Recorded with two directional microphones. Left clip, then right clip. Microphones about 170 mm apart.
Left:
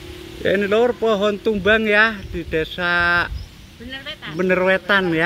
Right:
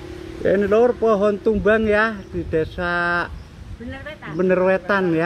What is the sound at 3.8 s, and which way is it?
Speech, 45° right (ahead or behind).